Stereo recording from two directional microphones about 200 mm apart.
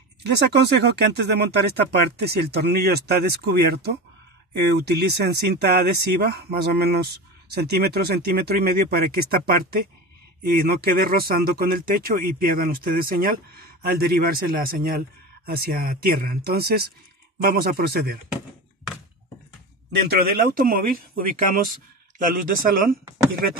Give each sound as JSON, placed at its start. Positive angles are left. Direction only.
{"t": 0.2, "sound": "speech", "side_deg": -55}
{"t": 20.1, "sound": "speech", "side_deg": -50}